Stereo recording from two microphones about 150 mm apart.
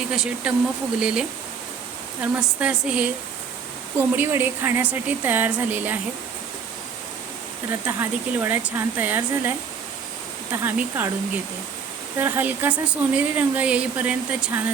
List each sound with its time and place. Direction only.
0.1 s speech: 5° right (ahead or behind)
2.2 s speech: 10° right (ahead or behind)
7.7 s speech: 15° right (ahead or behind)
12.2 s speech: 15° right (ahead or behind)